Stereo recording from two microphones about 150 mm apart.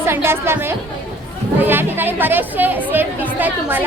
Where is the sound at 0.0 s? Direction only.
15° right (ahead or behind).